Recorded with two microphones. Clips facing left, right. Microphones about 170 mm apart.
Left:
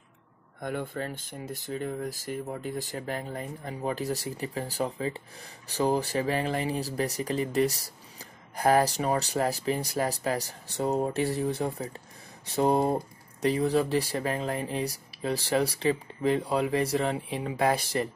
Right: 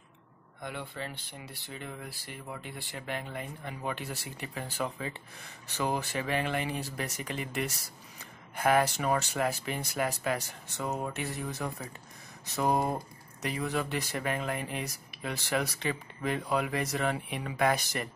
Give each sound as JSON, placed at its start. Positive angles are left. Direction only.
{"t": 0.6, "sound": "speech", "side_deg": 45}